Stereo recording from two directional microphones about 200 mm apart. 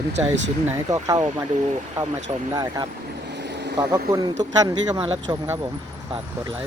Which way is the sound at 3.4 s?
60° right (ahead or behind).